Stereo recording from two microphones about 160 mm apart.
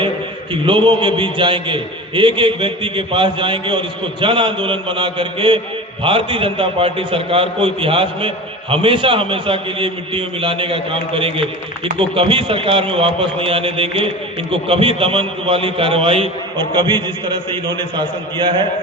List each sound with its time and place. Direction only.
0.5 s a man's voice: 30° right (ahead or behind)